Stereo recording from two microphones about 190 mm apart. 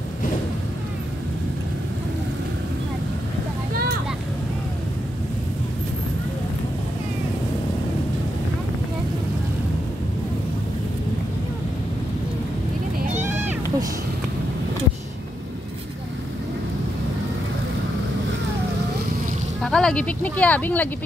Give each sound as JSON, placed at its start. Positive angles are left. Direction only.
{"t": 13.1, "sound": "cat", "side_deg": -10}
{"t": 19.6, "sound": "speech", "side_deg": 5}